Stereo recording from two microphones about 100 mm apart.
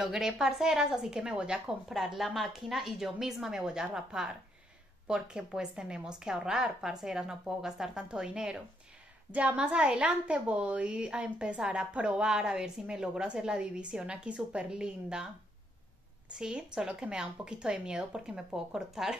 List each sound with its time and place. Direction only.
0.0 s a woman's voice: 5° right (ahead or behind)
16.3 s a woman's voice: 5° right (ahead or behind)